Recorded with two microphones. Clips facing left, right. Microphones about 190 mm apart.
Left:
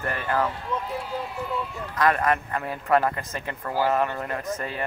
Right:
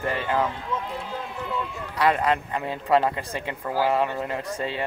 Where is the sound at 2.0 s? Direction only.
15° right (ahead or behind).